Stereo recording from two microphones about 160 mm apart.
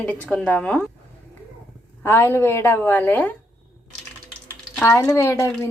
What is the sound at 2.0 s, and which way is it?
Dishes, 15° left (ahead or behind).